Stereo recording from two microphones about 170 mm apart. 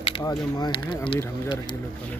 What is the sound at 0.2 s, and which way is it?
Speech, 20° left (ahead or behind).